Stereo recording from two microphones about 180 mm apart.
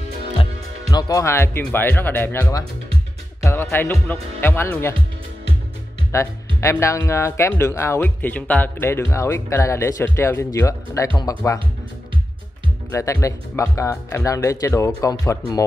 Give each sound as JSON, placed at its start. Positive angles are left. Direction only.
{"t": 0.8, "sound": "speech", "side_deg": 20}
{"t": 3.7, "sound": "speech", "side_deg": 10}
{"t": 6.1, "sound": "speech", "side_deg": 15}
{"t": 12.9, "sound": "speech", "side_deg": 15}
{"t": 14.7, "sound": "speech", "side_deg": 5}
{"t": 15.0, "sound": "speech", "side_deg": 20}